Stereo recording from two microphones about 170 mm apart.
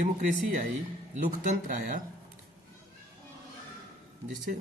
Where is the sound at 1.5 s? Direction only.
45° right (ahead or behind).